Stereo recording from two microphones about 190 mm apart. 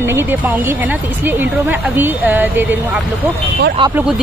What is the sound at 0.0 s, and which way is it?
Speech, 10° right (ahead or behind).